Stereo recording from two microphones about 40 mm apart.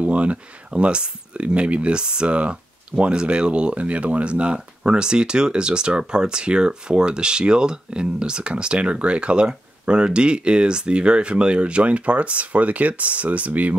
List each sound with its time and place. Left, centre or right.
0.0 s speech: right